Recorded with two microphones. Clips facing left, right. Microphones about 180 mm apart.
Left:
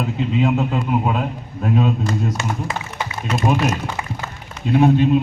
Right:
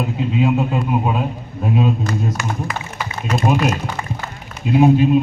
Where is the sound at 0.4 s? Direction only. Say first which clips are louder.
Right 3 dB; 10° right (ahead or behind).